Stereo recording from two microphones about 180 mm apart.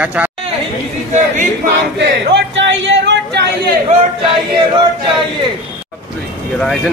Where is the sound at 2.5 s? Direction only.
90° right.